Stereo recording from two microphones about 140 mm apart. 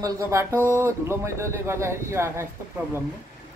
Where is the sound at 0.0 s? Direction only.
20° right (ahead or behind).